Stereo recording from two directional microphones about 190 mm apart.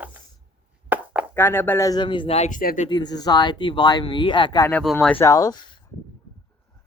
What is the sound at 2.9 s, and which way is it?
Speech, 20° left (ahead or behind).